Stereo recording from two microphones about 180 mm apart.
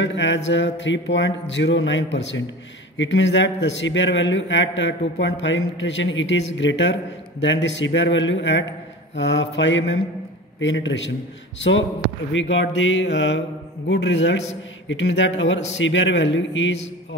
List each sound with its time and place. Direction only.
0.0 s a man's voice: 90° left
9.1 s mantra: 80° left
10.6 s a man's voice: 90° left
12.3 s a man's voice: 90° left
13.8 s mantra: 80° left
14.9 s a man's voice: 90° left